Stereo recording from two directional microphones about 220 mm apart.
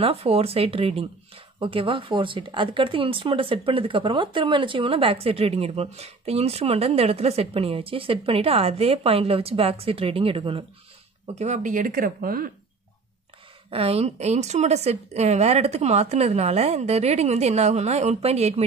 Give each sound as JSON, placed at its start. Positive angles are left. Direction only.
{"t": 0.0, "sound": "speech", "side_deg": -25}
{"t": 13.7, "sound": "speech", "side_deg": -25}